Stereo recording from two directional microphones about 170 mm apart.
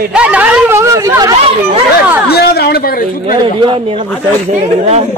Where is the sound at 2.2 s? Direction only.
70° left (ahead or behind).